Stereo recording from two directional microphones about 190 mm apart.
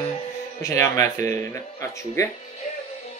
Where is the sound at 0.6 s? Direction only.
15° left (ahead or behind).